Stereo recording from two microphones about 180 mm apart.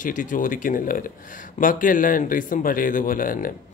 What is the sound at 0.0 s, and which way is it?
Speech, 45° left (ahead or behind).